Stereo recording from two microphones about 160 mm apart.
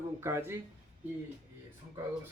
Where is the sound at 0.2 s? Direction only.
15° right (ahead or behind).